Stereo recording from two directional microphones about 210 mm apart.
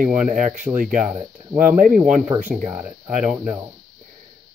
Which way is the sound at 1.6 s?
40° right (ahead or behind).